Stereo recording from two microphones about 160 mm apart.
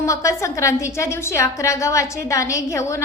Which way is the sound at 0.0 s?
20° left (ahead or behind).